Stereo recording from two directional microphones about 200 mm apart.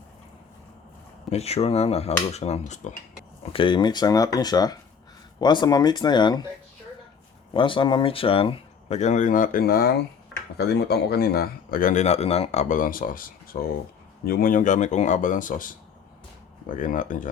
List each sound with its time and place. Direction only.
1.3 s speech: 30° left (ahead or behind)
3.5 s speech: 25° left (ahead or behind)
7.5 s a man's voice: 25° left (ahead or behind); by 17.2 s 40° left (ahead or behind)